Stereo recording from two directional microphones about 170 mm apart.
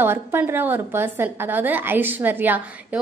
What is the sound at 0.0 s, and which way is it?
A woman's voice, 15° right (ahead or behind).